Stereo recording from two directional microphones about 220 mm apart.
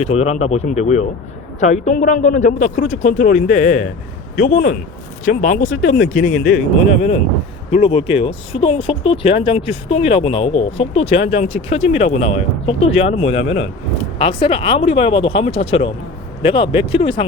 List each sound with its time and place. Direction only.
0.0 s a man's voice: 30° left (ahead or behind)
7.7 s speech: 25° left (ahead or behind)